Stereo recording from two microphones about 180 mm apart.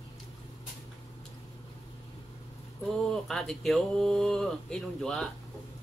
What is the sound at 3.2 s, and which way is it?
Speech, centre (ahead or behind).